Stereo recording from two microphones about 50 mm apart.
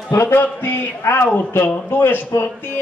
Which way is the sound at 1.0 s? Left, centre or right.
Left.